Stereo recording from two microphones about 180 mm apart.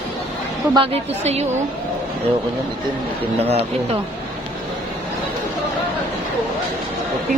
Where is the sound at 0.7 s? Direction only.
35° right (ahead or behind).